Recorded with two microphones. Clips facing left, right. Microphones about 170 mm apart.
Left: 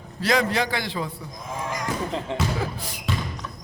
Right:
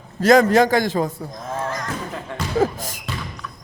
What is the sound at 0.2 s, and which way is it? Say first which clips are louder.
Speech: right 9 dB; 45° right (ahead or behind).